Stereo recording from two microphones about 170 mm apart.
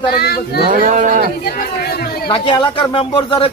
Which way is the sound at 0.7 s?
50° right (ahead or behind).